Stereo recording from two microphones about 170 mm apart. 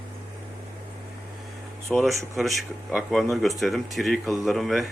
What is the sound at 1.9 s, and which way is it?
Speech, centre (ahead or behind).